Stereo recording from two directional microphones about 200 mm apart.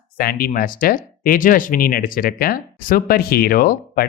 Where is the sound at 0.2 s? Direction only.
50° left (ahead or behind).